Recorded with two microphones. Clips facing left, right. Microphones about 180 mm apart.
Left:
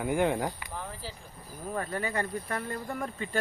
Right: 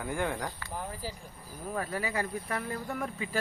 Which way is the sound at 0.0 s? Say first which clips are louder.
Left 6 dB; 20° left (ahead or behind).